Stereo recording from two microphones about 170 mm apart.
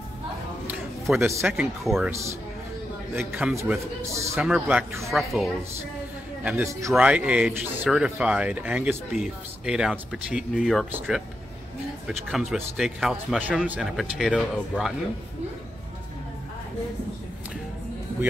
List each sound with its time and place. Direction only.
0.7 s a sound: centre (ahead or behind)
1.2 s speech: 15° right (ahead or behind)
1.6 s speech: centre (ahead or behind)
2.0 s speech: 15° right (ahead or behind)
3.3 s speech: 5° right (ahead or behind)
4.1 s speech: 15° right (ahead or behind)
4.4 s speech: 5° right (ahead or behind)
6.4 s speech: 10° right (ahead or behind)
12.1 s speech: centre (ahead or behind)